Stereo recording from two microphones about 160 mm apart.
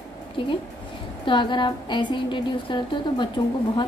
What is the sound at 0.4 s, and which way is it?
A woman's voice, 30° left (ahead or behind).